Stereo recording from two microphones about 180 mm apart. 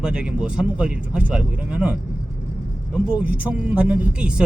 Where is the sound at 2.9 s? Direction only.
5° right (ahead or behind).